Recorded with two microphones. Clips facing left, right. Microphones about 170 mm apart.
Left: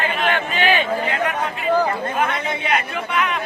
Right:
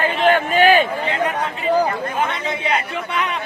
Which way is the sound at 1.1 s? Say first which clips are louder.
Right 1 dB; 30° right (ahead or behind).